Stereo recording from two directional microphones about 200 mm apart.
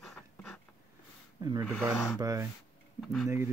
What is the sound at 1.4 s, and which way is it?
Speech, 20° right (ahead or behind).